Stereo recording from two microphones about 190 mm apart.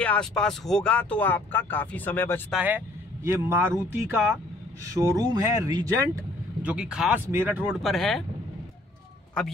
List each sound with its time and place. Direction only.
0.0 s speech: 5° left (ahead or behind)
2.5 s speech: 10° right (ahead or behind)
6.6 s speech: 5° right (ahead or behind)